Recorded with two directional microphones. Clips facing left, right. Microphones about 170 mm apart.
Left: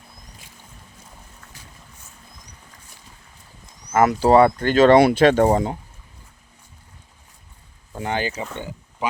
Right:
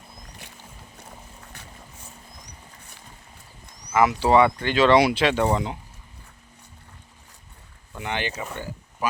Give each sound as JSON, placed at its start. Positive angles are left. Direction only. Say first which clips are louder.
{"t": 0.4, "sound": "boat", "louder": "right 3 dB", "side_deg": -70}
{"t": 3.9, "sound": "speech", "louder": "left 3 dB", "side_deg": 45}
{"t": 7.9, "sound": "speech", "louder": "left 4 dB", "side_deg": 40}
{"t": 8.5, "sound": "a sound", "louder": "left 2 dB", "side_deg": 20}